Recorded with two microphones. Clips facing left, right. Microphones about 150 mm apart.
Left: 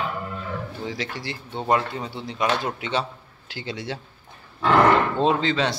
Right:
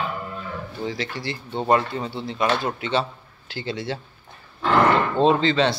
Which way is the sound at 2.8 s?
15° left (ahead or behind).